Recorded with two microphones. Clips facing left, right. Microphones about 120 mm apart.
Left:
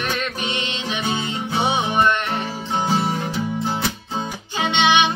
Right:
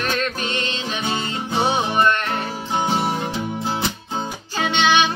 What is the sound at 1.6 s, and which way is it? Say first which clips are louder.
Music: right 1 dB; 20° left (ahead or behind).